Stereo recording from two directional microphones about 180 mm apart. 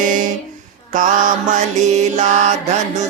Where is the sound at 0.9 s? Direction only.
45° right (ahead or behind).